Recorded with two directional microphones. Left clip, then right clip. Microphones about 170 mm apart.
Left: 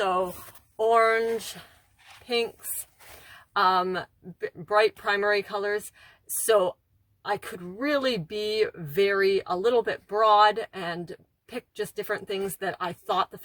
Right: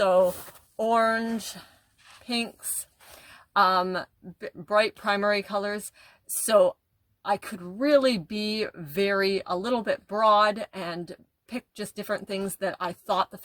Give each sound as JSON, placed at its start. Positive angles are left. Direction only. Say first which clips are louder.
{"t": 0.8, "sound": "speech", "louder": "left 2 dB", "side_deg": -40}